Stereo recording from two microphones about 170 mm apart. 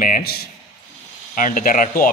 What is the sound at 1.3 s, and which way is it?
Speech, 50° left (ahead or behind).